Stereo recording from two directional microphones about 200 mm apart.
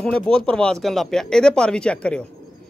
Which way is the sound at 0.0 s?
5° left (ahead or behind).